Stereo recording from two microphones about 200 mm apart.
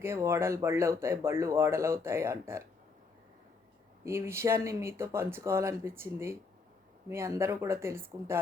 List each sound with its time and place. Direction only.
0.0 s speech: 15° right (ahead or behind)
4.0 s speech: 15° right (ahead or behind)